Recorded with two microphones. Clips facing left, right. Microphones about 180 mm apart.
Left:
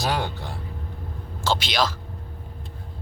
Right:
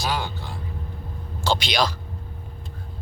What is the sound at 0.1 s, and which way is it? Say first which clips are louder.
Vehicle: left 1 dB; 65° left (ahead or behind).